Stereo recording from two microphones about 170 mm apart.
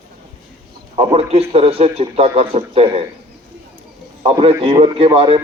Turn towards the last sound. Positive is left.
turn(degrees=-35)  # may be behind; listen again after turning